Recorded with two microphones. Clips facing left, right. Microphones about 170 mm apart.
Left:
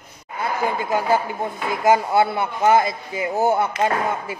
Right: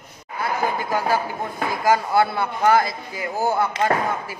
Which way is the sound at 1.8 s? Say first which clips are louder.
Left 2 dB; 20° left (ahead or behind).